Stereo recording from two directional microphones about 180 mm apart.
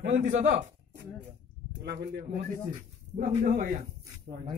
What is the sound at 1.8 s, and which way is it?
A man's voice, 65° right (ahead or behind).